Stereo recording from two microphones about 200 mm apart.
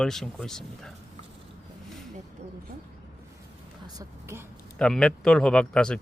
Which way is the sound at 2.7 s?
45° right (ahead or behind).